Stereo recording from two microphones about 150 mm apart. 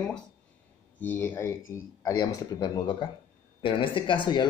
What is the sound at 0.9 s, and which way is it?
Speech, 10° left (ahead or behind).